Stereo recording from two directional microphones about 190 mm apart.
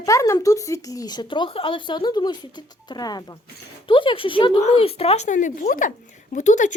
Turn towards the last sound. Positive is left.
turn(degrees=40)  # may be behind; listen again after turning